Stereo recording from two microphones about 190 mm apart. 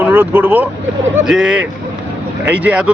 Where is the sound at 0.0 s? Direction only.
10° right (ahead or behind).